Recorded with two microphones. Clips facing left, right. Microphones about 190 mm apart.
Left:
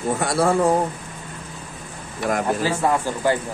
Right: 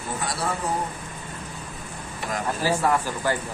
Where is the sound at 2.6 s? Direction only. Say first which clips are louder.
Left 2 dB; 20° left (ahead or behind).